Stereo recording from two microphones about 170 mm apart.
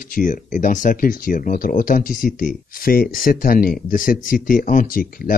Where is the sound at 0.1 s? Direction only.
50° left (ahead or behind).